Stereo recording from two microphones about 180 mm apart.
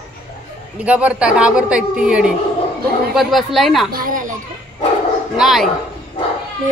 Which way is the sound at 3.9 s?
50° right (ahead or behind).